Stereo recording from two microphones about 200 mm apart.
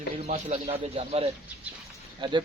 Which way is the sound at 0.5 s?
30° right (ahead or behind).